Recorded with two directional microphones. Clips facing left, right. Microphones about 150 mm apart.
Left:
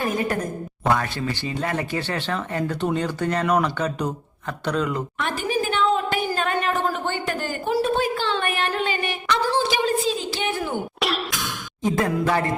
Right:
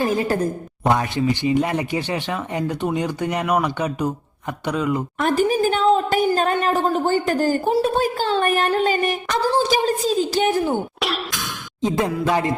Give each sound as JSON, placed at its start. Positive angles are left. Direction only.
{"t": 0.0, "sound": "a woman's voice", "side_deg": -30}
{"t": 0.9, "sound": "speech", "side_deg": -15}
{"t": 5.2, "sound": "a woman's voice", "side_deg": -40}
{"t": 7.8, "sound": "a sound", "side_deg": -40}
{"t": 11.8, "sound": "speech", "side_deg": -20}